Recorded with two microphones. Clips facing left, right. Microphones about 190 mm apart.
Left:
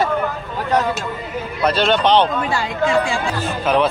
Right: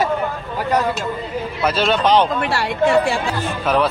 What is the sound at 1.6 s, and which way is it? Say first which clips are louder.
Speech: left 1 dB; 5° right (ahead or behind).